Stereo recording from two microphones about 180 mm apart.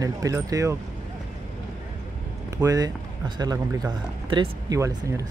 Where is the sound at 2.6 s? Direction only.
20° right (ahead or behind).